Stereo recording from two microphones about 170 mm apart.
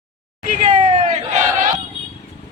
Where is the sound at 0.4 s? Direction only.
50° right (ahead or behind).